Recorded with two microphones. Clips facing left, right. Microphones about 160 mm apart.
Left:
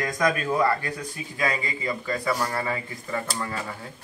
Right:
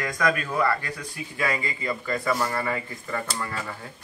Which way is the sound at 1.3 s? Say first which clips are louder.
Even; 15° left (ahead or behind).